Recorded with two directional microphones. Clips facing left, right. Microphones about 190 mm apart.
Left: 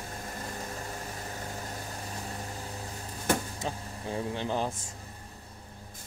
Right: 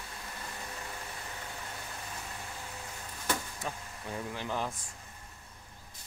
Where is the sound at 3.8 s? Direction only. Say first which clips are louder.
Left 5 dB; 30° left (ahead or behind).